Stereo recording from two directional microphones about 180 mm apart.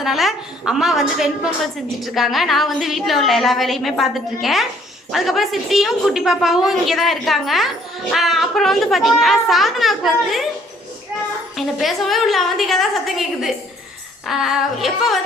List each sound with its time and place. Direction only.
0.0 s a woman's voice: centre (ahead or behind)
11.5 s a woman's voice: centre (ahead or behind)